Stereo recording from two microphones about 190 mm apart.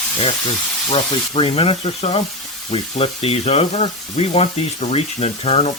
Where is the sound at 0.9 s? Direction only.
30° left (ahead or behind).